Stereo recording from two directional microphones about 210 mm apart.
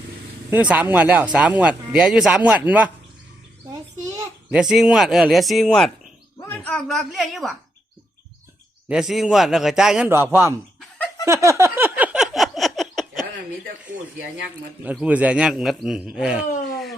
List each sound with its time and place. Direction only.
0.5 s speech: 5° right (ahead or behind)
4.5 s a man's voice: 5° right (ahead or behind)
8.9 s a man's voice: 5° right (ahead or behind)
10.8 s laughter: 10° left (ahead or behind)
11.3 s a sound: 15° right (ahead or behind)
14.8 s a man's voice: 5° right (ahead or behind)